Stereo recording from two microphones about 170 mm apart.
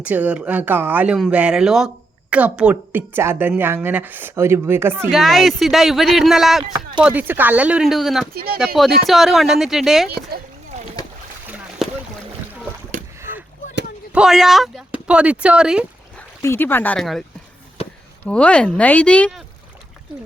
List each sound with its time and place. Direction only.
0.0 s a woman's voice: 10° right (ahead or behind)
5.1 s a woman's voice: centre (ahead or behind)
10.1 s speech: 70° right (ahead or behind)
11.8 s boat: centre (ahead or behind)
13.1 s rowboat: 15° right (ahead or behind)
14.1 s speech: 5° right (ahead or behind)
16.1 s speech: 15° left (ahead or behind)
18.3 s speech: 5° left (ahead or behind)